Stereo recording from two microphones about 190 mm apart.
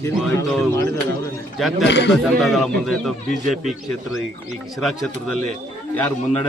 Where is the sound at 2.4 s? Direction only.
Centre (ahead or behind).